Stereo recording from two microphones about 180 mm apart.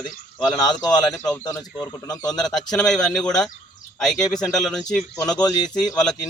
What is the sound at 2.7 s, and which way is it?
Speech, 5° left (ahead or behind).